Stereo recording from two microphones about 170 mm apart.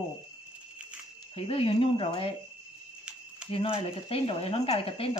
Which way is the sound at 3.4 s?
30° left (ahead or behind).